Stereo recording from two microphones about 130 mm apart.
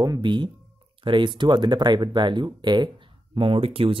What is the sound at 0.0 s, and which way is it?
Speech, 35° right (ahead or behind).